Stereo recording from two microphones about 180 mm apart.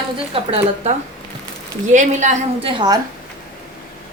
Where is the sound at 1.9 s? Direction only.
40° right (ahead or behind); by 3.0 s 25° right (ahead or behind).